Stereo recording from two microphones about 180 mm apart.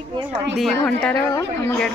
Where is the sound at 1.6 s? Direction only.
15° left (ahead or behind).